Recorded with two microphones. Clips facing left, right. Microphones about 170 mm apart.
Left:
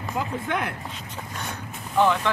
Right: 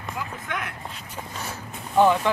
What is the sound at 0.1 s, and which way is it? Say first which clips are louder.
Speech: left 5 dB; 30° left (ahead or behind).